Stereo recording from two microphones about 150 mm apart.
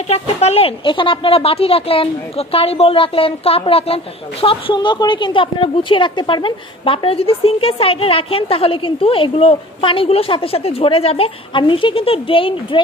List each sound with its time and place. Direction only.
0.1 s a woman's voice: 45° left (ahead or behind)